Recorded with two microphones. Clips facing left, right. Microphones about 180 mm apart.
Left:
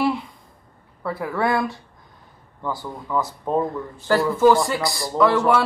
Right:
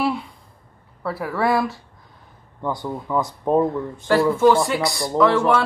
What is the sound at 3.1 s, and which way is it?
Speech, 20° right (ahead or behind).